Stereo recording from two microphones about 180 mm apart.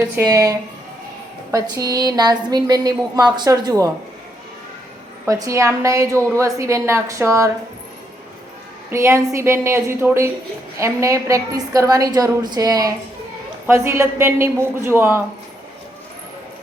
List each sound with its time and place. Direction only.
0.3 s a woman's voice: 20° right (ahead or behind)
5.2 s a woman's voice: 15° right (ahead or behind)
8.9 s a woman's voice: 15° right (ahead or behind)